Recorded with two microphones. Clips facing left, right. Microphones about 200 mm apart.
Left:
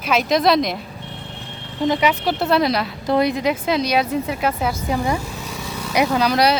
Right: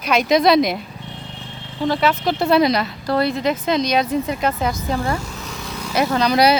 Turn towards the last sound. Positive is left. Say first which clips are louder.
# right 1 dB
turn(degrees=0)  # may be behind; listen again after turning